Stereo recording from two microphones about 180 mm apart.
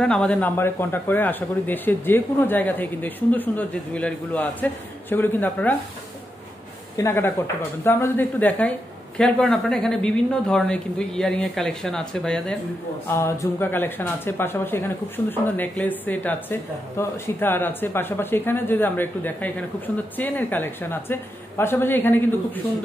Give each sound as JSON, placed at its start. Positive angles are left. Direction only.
{"t": 0.0, "sound": "a man's voice", "side_deg": 5}
{"t": 7.0, "sound": "a man's voice", "side_deg": 15}
{"t": 13.0, "sound": "a man's voice", "side_deg": 15}